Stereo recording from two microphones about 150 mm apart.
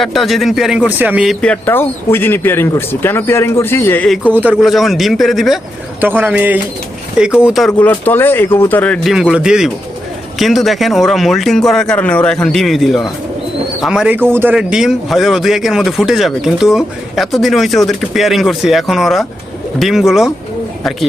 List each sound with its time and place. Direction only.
0.0 s speech: centre (ahead or behind)
1.4 s speech: 10° left (ahead or behind)
4.6 s speech: centre (ahead or behind)
6.0 s speech: 10° right (ahead or behind)
7.7 s speech: 10° left (ahead or behind)
9.3 s speech: 5° right (ahead or behind)
14.3 s speech: 15° right (ahead or behind)
14.5 s speech: 5° right (ahead or behind)